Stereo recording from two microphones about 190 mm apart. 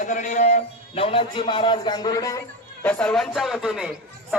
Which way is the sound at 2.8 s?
5° left (ahead or behind).